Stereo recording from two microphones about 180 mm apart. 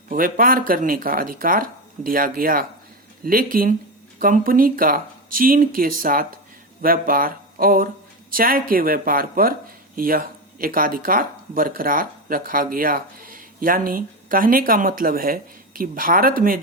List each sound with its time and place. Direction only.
0.1 s speech: 50° right (ahead or behind)